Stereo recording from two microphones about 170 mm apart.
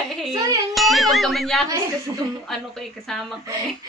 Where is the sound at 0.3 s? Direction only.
20° right (ahead or behind).